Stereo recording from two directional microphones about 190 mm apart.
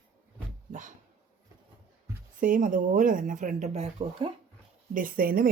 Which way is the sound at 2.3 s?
45° right (ahead or behind).